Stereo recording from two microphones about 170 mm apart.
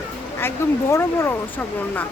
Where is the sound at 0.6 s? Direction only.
15° left (ahead or behind).